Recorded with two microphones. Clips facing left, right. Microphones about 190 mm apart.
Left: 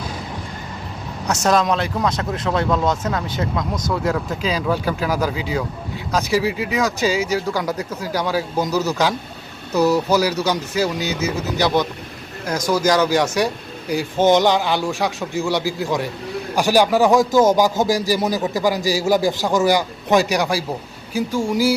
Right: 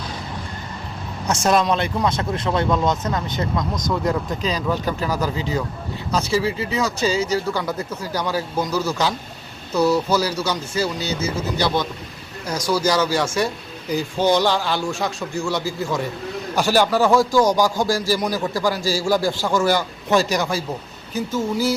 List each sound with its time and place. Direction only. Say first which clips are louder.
1.3 s a man's voice: left 1 dB; centre (ahead or behind)